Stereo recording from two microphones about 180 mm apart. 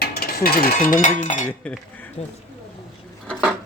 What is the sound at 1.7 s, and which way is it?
Speech, 5° left (ahead or behind).